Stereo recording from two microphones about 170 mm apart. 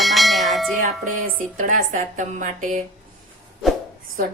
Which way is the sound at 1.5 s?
50° right (ahead or behind).